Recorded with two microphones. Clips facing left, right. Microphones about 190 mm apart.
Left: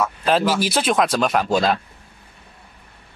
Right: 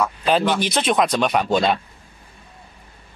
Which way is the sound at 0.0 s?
Centre (ahead or behind).